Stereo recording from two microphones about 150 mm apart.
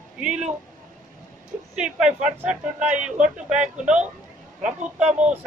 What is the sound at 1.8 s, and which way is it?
A man's voice, 5° right (ahead or behind).